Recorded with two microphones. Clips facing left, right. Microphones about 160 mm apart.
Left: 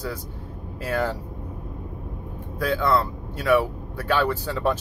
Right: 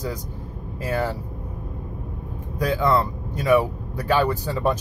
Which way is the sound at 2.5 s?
15° right (ahead or behind).